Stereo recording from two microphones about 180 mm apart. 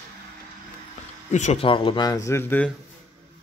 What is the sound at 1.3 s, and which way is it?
Speech, 40° left (ahead or behind).